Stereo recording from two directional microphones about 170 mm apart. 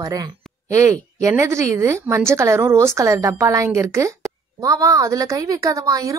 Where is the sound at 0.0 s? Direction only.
20° right (ahead or behind).